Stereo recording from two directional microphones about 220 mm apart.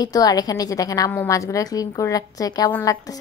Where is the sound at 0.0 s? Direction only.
15° left (ahead or behind).